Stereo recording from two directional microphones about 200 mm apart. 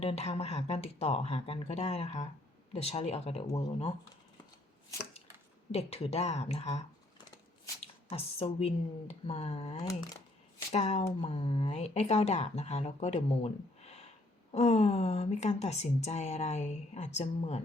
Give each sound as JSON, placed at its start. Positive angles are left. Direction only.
{"t": 0.0, "sound": "speech", "side_deg": 30}
{"t": 5.7, "sound": "speech", "side_deg": 30}
{"t": 8.1, "sound": "speech", "side_deg": 30}